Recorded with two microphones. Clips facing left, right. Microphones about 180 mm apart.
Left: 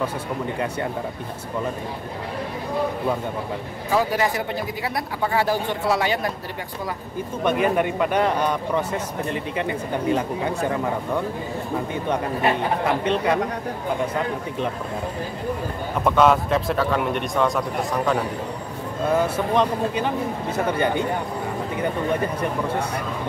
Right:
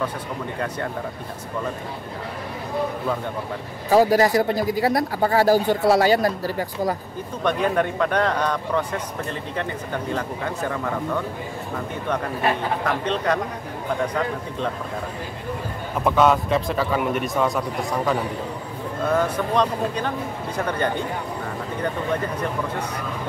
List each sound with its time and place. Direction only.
3.9 s speech: 40° right (ahead or behind)
7.4 s a man's voice: 10° left (ahead or behind)
12.8 s a man's voice: 10° left (ahead or behind)
16.0 s a man's voice: centre (ahead or behind)